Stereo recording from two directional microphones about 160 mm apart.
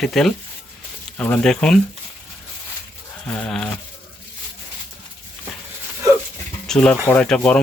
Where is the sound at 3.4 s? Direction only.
5° left (ahead or behind).